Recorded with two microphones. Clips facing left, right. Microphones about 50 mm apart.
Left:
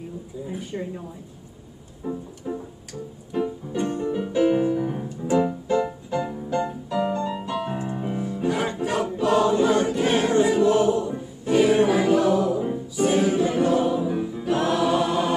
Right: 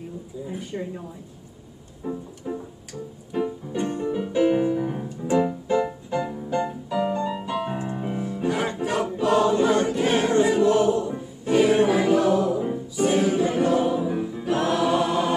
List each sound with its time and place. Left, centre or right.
0.7 s a woman's voice: centre
2.0 s music: centre
8.9 s choir: centre
11.1 s music: centre
13.4 s choir: centre
14.9 s chant: centre